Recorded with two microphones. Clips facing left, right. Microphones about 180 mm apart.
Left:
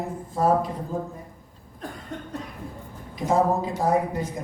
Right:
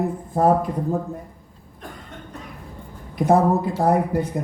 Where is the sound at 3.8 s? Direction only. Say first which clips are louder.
Right 4 dB; 60° right (ahead or behind).